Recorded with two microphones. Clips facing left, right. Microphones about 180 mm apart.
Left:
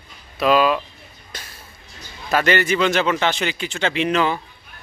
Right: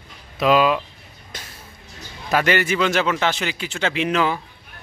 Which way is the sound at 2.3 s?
10° right (ahead or behind).